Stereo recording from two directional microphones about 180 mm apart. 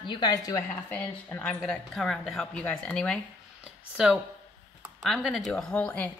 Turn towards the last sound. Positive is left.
turn(degrees=10)  # may be behind; listen again after turning